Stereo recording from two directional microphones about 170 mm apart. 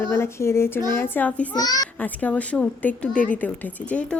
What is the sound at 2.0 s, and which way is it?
A woman's voice, 10° left (ahead or behind).